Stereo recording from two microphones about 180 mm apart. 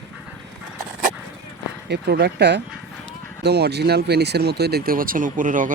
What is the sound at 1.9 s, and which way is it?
Speech, 70° right (ahead or behind).